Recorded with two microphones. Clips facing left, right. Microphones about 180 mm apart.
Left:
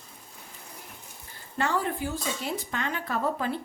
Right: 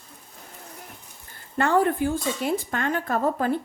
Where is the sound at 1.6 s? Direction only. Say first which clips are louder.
Right 7 dB; 55° right (ahead or behind).